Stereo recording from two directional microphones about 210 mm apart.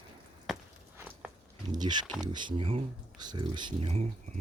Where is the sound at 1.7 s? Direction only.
20° right (ahead or behind).